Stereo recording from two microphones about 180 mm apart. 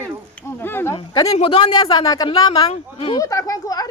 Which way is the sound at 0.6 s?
10° left (ahead or behind).